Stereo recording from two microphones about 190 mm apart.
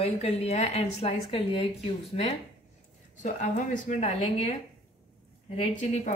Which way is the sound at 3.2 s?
45° left (ahead or behind).